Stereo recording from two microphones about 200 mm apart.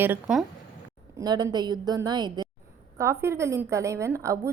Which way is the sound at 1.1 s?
20° right (ahead or behind).